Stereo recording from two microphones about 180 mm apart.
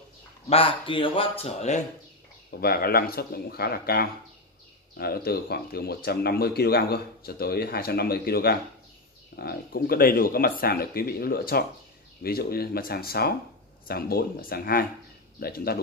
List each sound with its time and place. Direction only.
0.5 s a man's voice: 30° left (ahead or behind)
2.6 s speech: 60° left (ahead or behind)